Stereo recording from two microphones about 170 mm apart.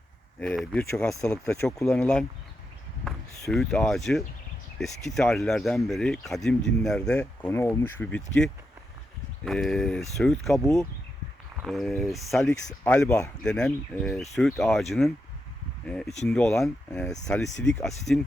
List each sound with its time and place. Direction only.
0.3 s speech: 5° left (ahead or behind)
3.5 s speech: centre (ahead or behind)
11.6 s speech: centre (ahead or behind); by 13.3 s 15° left (ahead or behind)
13.4 s speech: 5° left (ahead or behind)
16.9 s speech: 15° left (ahead or behind)
17.2 s speech: 5° left (ahead or behind)